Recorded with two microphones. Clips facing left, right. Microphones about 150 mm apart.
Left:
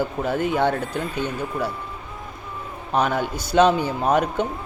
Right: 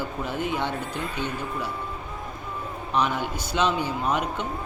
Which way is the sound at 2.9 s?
45° left (ahead or behind).